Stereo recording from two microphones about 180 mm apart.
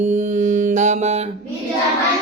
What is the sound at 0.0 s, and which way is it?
Mantra, 40° right (ahead or behind).